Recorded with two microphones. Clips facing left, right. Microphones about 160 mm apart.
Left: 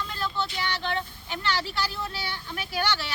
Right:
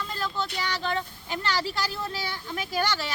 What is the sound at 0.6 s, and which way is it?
Speech, 40° right (ahead or behind).